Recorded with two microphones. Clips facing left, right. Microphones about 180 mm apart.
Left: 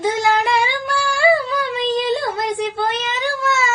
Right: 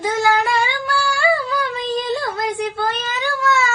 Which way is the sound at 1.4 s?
25° left (ahead or behind).